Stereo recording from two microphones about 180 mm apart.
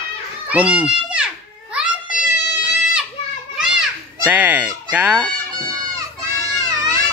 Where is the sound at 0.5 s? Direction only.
10° right (ahead or behind).